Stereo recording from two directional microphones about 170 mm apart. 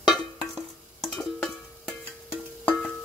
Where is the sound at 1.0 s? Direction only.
5° left (ahead or behind).